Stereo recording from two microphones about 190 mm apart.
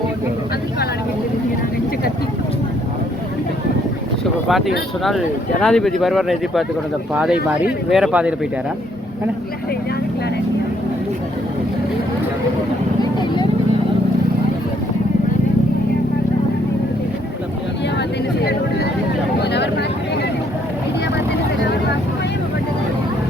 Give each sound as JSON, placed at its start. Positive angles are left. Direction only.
{"t": 4.4, "sound": "speech", "side_deg": 0}
{"t": 13.1, "sound": "vehicle", "side_deg": 25}
{"t": 19.4, "sound": "vehicle", "side_deg": 60}